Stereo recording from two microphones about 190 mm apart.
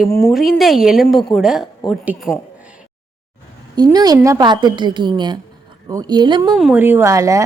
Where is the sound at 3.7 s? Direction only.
20° right (ahead or behind).